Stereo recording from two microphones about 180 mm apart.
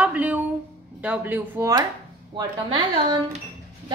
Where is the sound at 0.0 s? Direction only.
10° right (ahead or behind).